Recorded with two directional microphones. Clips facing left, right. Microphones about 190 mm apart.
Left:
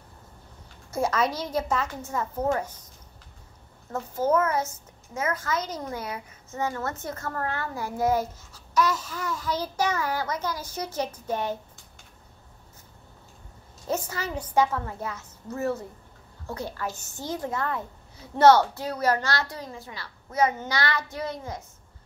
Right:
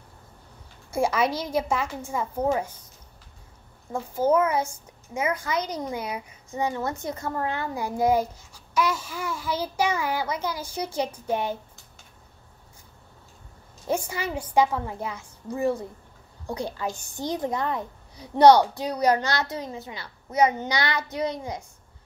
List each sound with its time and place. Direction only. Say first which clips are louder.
0.9 s a child's voice: right 2 dB; 10° right (ahead or behind)
3.9 s a child's voice: right 2 dB; 10° right (ahead or behind)
13.8 s a child's voice: right 2 dB; 10° right (ahead or behind)